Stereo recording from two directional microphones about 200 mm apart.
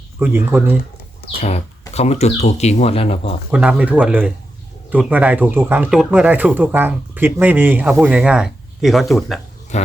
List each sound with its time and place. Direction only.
0.2 s speech: 10° right (ahead or behind)
1.4 s speech: 30° left (ahead or behind)
3.5 s speech: 5° right (ahead or behind)
9.7 s speech: 35° left (ahead or behind)